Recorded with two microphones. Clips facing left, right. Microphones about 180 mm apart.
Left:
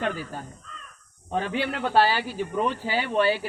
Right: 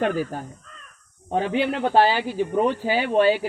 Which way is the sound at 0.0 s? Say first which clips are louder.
Right 6 dB; 50° right (ahead or behind).